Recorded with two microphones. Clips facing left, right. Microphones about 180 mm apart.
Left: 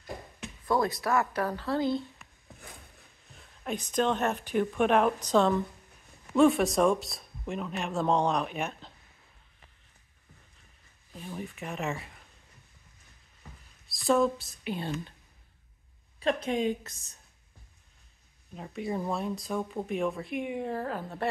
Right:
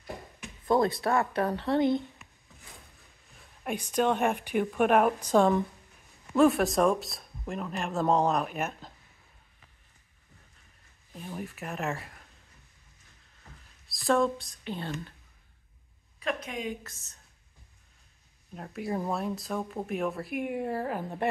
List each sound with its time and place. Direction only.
0.7 s speech: 25° right (ahead or behind)
3.6 s a woman's voice: 10° right (ahead or behind)
11.2 s a sound: 5° right (ahead or behind)
13.8 s speech: centre (ahead or behind)
16.2 s a woman's voice: 30° left (ahead or behind)
16.9 s a woman's voice: 15° left (ahead or behind)
18.5 s speech: centre (ahead or behind)